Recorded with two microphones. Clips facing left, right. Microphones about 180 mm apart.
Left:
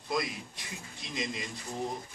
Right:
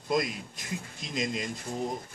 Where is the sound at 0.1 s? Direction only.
45° right (ahead or behind).